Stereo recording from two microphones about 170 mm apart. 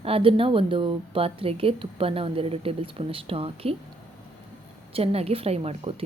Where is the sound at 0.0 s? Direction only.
35° right (ahead or behind).